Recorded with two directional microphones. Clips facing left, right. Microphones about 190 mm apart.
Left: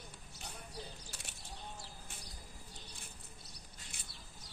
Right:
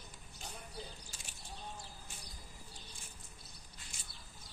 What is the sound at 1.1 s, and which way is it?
Bird, 65° left (ahead or behind).